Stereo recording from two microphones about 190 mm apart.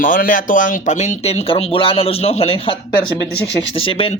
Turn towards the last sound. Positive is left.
turn(degrees=30)  # may be behind; listen again after turning